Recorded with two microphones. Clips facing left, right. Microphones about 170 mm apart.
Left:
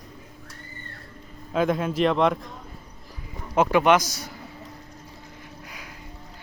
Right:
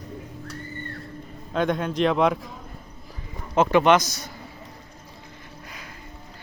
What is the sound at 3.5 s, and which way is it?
Speech, 10° left (ahead or behind).